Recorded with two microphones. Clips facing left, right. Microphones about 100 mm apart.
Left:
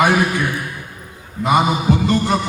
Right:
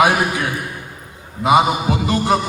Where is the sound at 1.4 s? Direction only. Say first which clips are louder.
Right 1 dB; 10° right (ahead or behind).